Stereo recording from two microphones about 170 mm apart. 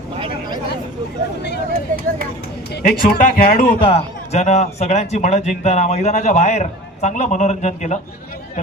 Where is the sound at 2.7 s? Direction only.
70° left (ahead or behind).